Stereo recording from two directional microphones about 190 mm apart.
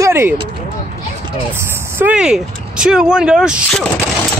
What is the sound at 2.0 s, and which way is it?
Speech, 5° right (ahead or behind).